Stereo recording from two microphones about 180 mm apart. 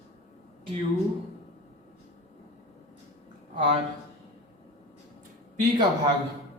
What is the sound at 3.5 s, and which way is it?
Speech, 30° right (ahead or behind).